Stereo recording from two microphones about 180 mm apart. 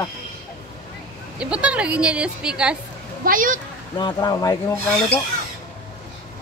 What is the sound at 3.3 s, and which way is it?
Speech, 50° right (ahead or behind).